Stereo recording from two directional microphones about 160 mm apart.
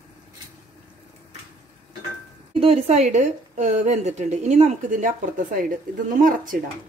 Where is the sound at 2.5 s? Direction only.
40° right (ahead or behind); by 6.5 s 60° right (ahead or behind).